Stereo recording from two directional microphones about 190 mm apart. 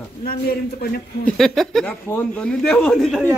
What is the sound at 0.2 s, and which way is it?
Speech, 50° left (ahead or behind).